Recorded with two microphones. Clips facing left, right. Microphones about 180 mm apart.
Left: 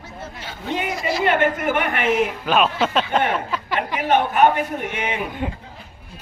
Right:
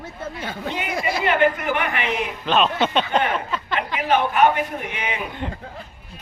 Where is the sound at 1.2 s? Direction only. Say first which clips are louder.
Even; 45° left (ahead or behind).